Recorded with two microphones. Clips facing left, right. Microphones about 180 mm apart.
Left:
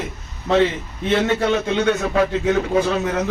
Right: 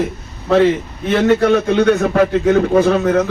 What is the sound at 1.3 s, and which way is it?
A man's voice, 55° right (ahead or behind).